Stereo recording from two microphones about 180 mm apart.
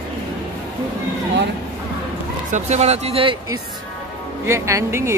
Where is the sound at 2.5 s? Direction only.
40° right (ahead or behind).